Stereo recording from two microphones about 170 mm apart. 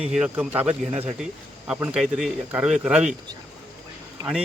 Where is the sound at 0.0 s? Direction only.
5° right (ahead or behind).